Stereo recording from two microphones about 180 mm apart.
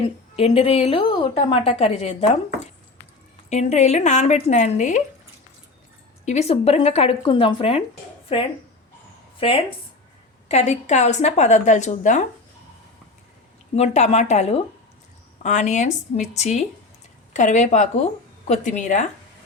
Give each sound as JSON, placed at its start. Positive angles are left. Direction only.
{"t": 0.3, "sound": "a woman's voice", "side_deg": 35}
{"t": 3.5, "sound": "a woman's voice", "side_deg": 40}
{"t": 6.2, "sound": "a woman's voice", "side_deg": 35}
{"t": 13.7, "sound": "a woman's voice", "side_deg": 40}